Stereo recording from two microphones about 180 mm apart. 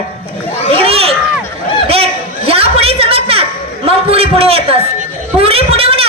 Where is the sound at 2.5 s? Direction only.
30° right (ahead or behind).